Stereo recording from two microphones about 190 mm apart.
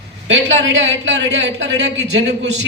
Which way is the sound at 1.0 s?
65° right (ahead or behind).